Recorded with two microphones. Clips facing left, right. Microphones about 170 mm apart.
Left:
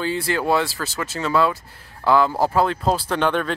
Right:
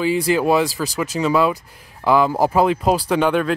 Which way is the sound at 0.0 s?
15° right (ahead or behind).